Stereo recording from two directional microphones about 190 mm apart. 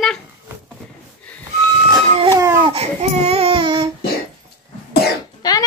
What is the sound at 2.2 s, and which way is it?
Speech, 20° right (ahead or behind).